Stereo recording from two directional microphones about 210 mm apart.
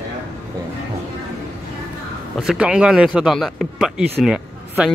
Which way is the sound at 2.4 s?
5° right (ahead or behind).